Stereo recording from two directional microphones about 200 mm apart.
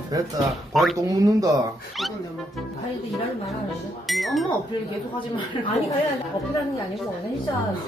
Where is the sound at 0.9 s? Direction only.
15° right (ahead or behind).